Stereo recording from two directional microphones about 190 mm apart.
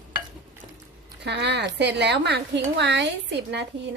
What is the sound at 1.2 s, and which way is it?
Speech, 65° right (ahead or behind).